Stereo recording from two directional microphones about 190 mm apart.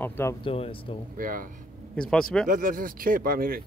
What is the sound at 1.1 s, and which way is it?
Speech, 45° right (ahead or behind).